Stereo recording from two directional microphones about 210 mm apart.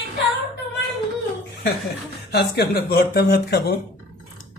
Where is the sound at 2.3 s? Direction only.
50° left (ahead or behind).